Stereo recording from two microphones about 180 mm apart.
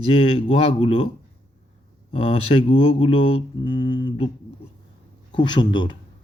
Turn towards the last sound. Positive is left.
turn(degrees=25)  # may be behind; listen again after turning